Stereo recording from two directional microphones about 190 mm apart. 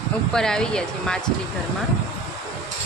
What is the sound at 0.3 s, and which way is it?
Speech, 5° left (ahead or behind).